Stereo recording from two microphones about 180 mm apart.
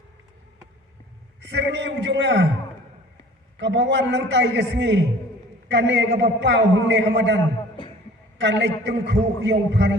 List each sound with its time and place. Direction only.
1.4 s a man's voice: 70° right (ahead or behind)
3.6 s a man's voice: 75° right (ahead or behind)
8.4 s a man's voice: 75° right (ahead or behind)